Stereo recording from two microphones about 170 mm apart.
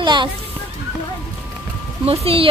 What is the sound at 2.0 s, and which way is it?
Speech, 35° right (ahead or behind).